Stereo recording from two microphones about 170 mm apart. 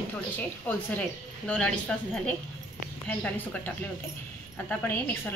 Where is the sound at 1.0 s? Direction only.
5° left (ahead or behind).